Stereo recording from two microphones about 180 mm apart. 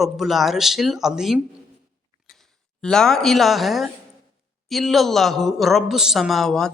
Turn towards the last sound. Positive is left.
turn(degrees=0)  # may be behind; listen again after turning